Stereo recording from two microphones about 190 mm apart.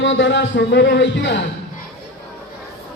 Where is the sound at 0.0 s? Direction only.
75° left (ahead or behind).